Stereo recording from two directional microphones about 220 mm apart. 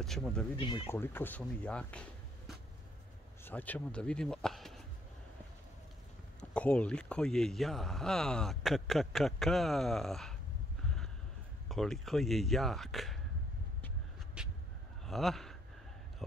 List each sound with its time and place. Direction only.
0.0 s speech: centre (ahead or behind)
0.6 s speech: 20° left (ahead or behind)
0.8 s speech: 10° left (ahead or behind)
6.5 s speech: 5° left (ahead or behind)
11.7 s speech: centre (ahead or behind)
14.4 s a sound: 5° right (ahead or behind)
15.0 s speech: centre (ahead or behind)